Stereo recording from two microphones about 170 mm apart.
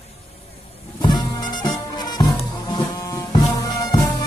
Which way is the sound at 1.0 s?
25° left (ahead or behind).